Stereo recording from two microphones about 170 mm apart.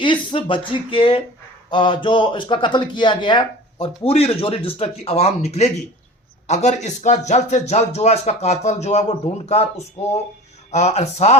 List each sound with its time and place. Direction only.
0.0 s speech: 30° left (ahead or behind)